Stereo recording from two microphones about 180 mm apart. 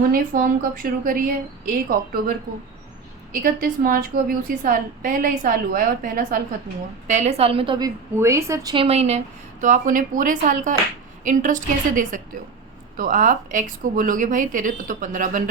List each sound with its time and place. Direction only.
0.1 s a woman's voice: 50° right (ahead or behind)
3.3 s a woman's voice: 50° right (ahead or behind)
7.1 s a woman's voice: 40° right (ahead or behind); by 8.7 s 15° right (ahead or behind)
8.7 s a woman's voice: 35° right (ahead or behind); by 15.4 s 50° right (ahead or behind)